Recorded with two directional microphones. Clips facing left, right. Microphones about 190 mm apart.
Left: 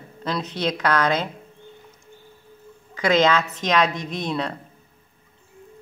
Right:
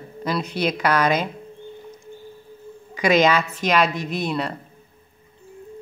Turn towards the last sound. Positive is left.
turn(degrees=-5)  # may be behind; listen again after turning